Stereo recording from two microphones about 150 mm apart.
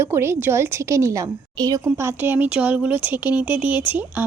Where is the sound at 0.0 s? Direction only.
15° right (ahead or behind).